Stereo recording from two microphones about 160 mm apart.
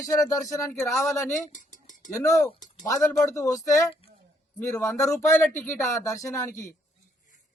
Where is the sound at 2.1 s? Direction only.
20° left (ahead or behind).